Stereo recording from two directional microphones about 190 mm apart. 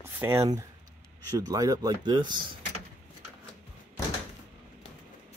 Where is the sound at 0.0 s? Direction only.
10° right (ahead or behind).